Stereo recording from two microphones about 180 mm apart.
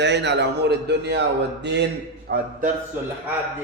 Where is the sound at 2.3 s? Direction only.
55° right (ahead or behind).